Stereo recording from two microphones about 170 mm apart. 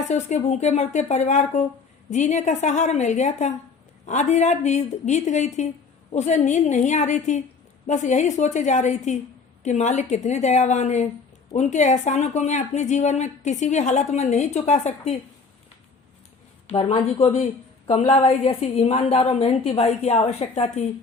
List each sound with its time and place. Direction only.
0.1 s a woman's voice: 45° left (ahead or behind)
16.6 s a woman's voice: 35° left (ahead or behind)